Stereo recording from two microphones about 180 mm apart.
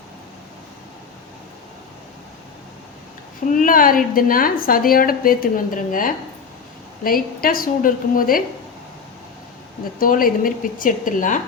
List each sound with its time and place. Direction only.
3.5 s a woman's voice: 50° left (ahead or behind)
10.0 s a woman's voice: 50° left (ahead or behind)